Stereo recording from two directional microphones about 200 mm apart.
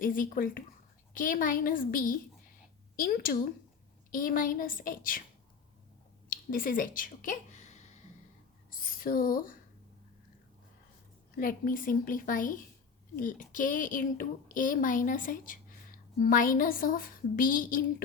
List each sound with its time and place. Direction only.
0.0 s a child's voice: 45° left (ahead or behind)
6.3 s a woman's voice: 45° left (ahead or behind)
8.7 s a sound: 45° left (ahead or behind)
11.3 s a child's voice: 45° left (ahead or behind)